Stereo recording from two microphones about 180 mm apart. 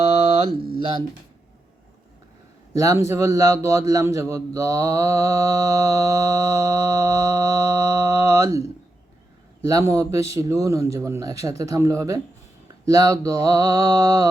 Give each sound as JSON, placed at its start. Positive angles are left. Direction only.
{"t": 0.5, "sound": "mantra", "side_deg": -30}
{"t": 2.7, "sound": "speech", "side_deg": -20}
{"t": 3.1, "sound": "mantra", "side_deg": -15}
{"t": 9.6, "sound": "speech", "side_deg": -20}
{"t": 12.8, "sound": "mantra", "side_deg": -20}